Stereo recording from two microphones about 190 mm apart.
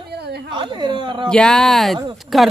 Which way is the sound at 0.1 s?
60° right (ahead or behind).